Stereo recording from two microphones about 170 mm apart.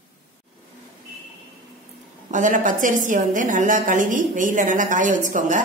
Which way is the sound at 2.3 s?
50° right (ahead or behind).